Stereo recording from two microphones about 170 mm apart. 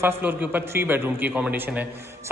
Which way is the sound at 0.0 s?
15° right (ahead or behind).